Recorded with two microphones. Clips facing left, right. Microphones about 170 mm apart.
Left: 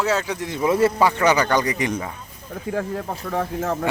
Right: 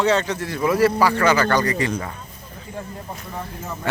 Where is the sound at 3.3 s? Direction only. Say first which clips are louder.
Left 10 dB; 85° left.